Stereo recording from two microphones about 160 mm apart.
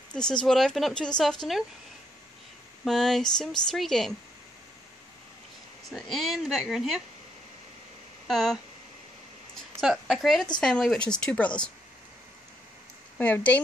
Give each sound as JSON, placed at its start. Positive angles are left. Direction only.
{"t": 0.1, "sound": "speech", "side_deg": 5}
{"t": 2.8, "sound": "speech", "side_deg": 0}
{"t": 5.9, "sound": "speech", "side_deg": 0}
{"t": 8.3, "sound": "speech", "side_deg": 0}
{"t": 9.8, "sound": "speech", "side_deg": 0}
{"t": 13.2, "sound": "speech", "side_deg": 10}